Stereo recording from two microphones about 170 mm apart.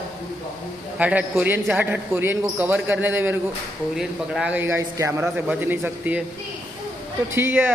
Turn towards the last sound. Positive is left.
turn(degrees=-15)  # may be behind; listen again after turning